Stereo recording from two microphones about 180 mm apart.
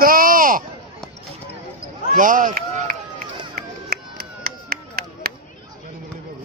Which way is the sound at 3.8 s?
55° right (ahead or behind).